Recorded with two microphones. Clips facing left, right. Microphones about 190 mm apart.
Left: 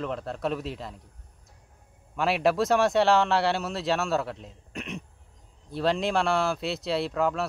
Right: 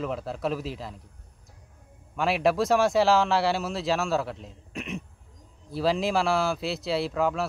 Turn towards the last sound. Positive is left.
turn(degrees=0)  # may be behind; listen again after turning